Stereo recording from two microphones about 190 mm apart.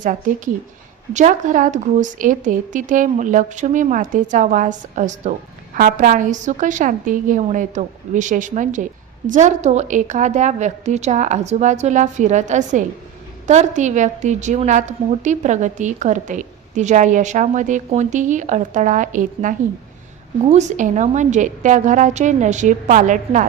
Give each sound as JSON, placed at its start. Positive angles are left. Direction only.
{"t": 0.0, "sound": "a woman's voice", "side_deg": -45}